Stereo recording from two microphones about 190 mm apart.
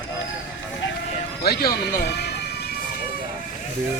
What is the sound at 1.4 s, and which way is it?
Speech, 55° left (ahead or behind).